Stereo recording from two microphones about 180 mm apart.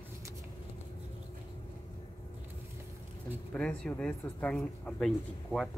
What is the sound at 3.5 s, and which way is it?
Speech, 5° left (ahead or behind).